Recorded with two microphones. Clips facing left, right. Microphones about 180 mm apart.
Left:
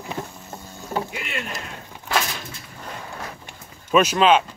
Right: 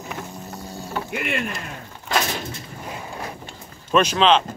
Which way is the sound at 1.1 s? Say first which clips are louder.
Right 6 dB; 55° right (ahead or behind).